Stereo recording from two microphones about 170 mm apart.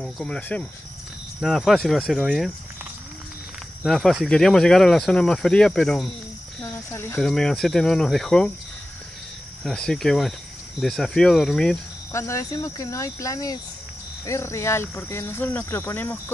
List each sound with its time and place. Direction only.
0.0 s speech: 5° left (ahead or behind)
3.8 s speech: centre (ahead or behind)
6.6 s cricket: 15° left (ahead or behind)
7.2 s speech: 5° left (ahead or behind)
9.6 s speech: 5° left (ahead or behind)
12.1 s speech: 15° left (ahead or behind)